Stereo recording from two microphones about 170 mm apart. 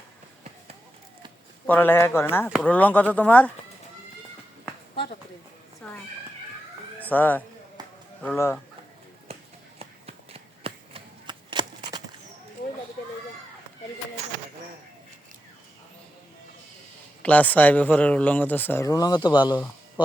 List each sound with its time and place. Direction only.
1.6 s speech: 10° left (ahead or behind)
5.8 s speech: 5° left (ahead or behind)
7.0 s speech: 10° left (ahead or behind)
7.8 s a sound: 25° right (ahead or behind)
8.2 s speech: 10° left (ahead or behind)
9.7 s a sound: 35° right (ahead or behind)
17.2 s speech: 10° left (ahead or behind); by 19.5 s 25° left (ahead or behind)